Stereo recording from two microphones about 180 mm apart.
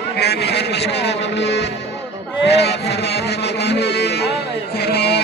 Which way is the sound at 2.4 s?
70° left (ahead or behind).